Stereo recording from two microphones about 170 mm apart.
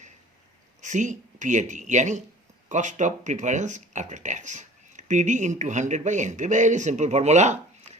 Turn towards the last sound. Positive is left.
turn(degrees=-40)  # may be behind; listen again after turning